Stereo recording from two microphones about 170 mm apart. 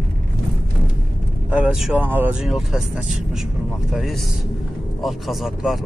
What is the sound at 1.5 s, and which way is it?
Speech, 5° right (ahead or behind).